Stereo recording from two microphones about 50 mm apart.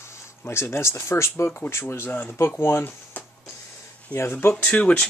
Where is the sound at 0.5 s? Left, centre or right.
Left.